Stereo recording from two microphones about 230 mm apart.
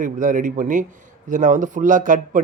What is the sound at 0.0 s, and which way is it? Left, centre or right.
Speech, right.